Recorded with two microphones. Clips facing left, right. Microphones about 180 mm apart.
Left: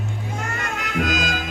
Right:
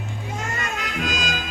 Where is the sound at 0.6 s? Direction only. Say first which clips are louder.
Left 6 dB; 60° left (ahead or behind).